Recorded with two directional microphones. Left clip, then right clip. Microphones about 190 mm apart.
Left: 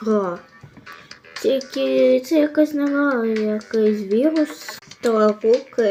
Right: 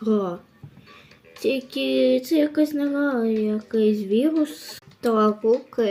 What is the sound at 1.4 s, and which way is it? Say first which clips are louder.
A child's voice: left 4 dB; 25° right (ahead or behind).